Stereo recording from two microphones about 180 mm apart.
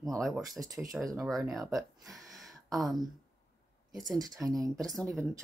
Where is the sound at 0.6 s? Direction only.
10° right (ahead or behind).